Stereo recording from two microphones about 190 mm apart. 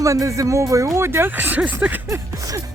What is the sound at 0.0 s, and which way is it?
Speech, 15° right (ahead or behind).